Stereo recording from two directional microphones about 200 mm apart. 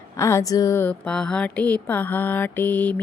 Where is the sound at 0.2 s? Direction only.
15° left (ahead or behind).